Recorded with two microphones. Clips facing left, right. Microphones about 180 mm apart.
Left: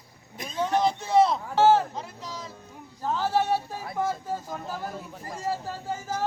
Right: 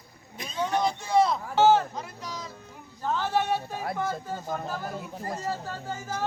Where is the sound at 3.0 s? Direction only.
5° left (ahead or behind).